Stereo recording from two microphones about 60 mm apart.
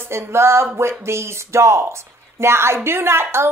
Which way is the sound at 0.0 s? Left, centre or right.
Right.